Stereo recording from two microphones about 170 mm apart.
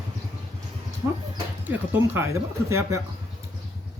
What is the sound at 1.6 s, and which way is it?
Speech, 10° right (ahead or behind).